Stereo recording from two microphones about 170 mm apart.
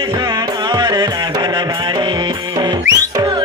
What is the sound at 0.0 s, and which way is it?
Music, 25° right (ahead or behind).